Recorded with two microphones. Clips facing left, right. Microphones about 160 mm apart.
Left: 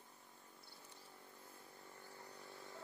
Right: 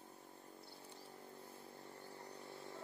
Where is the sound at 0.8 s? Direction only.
30° right (ahead or behind).